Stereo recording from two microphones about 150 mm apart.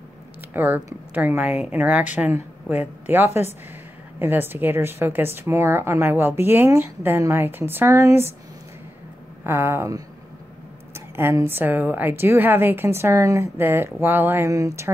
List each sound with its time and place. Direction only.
0.5 s a woman's voice: 10° right (ahead or behind)
9.4 s a woman's voice: 15° right (ahead or behind)